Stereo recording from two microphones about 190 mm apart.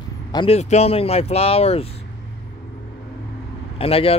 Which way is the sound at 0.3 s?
30° left (ahead or behind).